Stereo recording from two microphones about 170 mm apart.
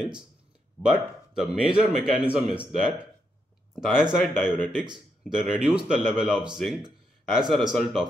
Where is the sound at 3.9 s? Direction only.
5° right (ahead or behind).